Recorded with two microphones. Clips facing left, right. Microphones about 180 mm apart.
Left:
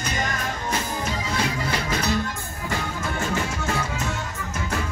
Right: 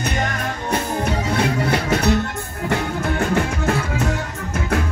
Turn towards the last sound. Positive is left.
turn(degrees=-60)  # may be behind; listen again after turning